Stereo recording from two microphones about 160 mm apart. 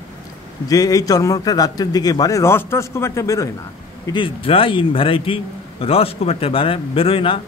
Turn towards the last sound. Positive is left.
turn(degrees=35)  # may be behind; listen again after turning